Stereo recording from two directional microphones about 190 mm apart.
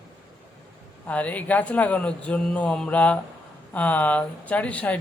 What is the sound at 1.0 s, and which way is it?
Speech, 5° left (ahead or behind).